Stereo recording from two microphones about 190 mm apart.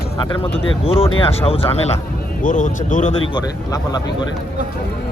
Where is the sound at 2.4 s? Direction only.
40° left (ahead or behind).